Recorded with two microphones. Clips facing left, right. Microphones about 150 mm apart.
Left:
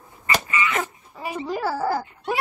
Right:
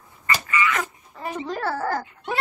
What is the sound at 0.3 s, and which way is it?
Dog, 25° left (ahead or behind).